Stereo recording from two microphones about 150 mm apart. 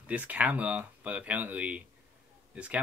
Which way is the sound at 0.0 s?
10° right (ahead or behind).